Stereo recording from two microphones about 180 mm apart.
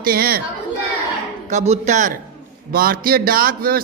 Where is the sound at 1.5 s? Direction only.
40° right (ahead or behind).